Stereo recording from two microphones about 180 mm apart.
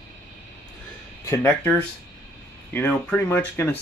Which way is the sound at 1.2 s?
10° left (ahead or behind).